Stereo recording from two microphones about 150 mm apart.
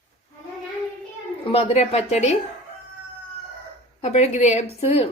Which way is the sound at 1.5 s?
40° left (ahead or behind).